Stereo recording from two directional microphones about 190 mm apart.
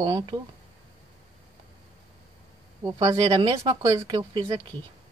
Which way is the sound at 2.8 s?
15° right (ahead or behind).